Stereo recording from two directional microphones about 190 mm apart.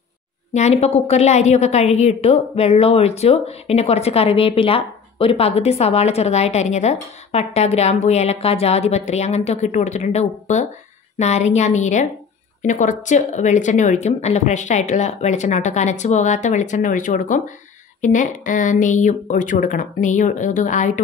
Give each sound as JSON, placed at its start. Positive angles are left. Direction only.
{"t": 0.5, "sound": "a woman's voice", "side_deg": 35}